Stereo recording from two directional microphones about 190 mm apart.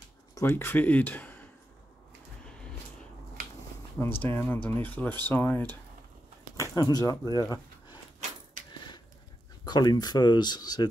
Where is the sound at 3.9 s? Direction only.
10° left (ahead or behind).